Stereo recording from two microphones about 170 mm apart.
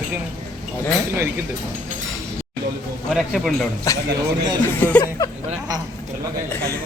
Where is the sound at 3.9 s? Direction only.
20° left (ahead or behind).